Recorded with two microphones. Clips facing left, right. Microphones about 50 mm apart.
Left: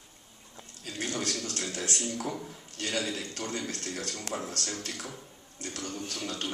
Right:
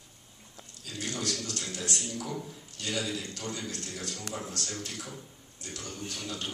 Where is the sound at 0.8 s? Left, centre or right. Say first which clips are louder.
Left 1 dB; left.